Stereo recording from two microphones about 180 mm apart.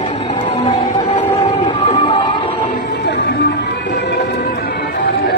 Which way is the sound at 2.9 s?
65° left (ahead or behind).